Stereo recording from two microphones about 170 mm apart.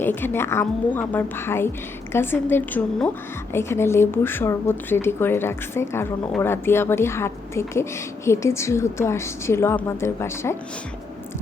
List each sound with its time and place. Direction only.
0.0 s a woman's voice: 10° left (ahead or behind)